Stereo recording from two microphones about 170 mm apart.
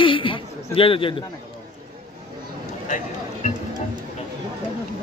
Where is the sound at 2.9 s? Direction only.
45° left (ahead or behind).